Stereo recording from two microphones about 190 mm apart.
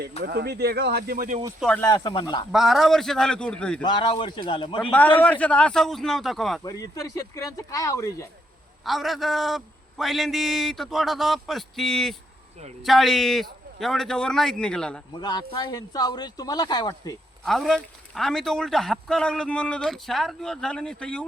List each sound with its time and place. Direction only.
0.2 s speech: 55° right (ahead or behind)
1.5 s speech: 5° left (ahead or behind)
1.9 s speech: 20° left (ahead or behind)
2.5 s speech: centre (ahead or behind)
3.8 s speech: 25° left (ahead or behind)
4.9 s speech: 10° left (ahead or behind)
6.6 s speech: 20° left (ahead or behind)
8.8 s speech: centre (ahead or behind)
15.2 s speech: 25° left (ahead or behind)
17.4 s speech: centre (ahead or behind)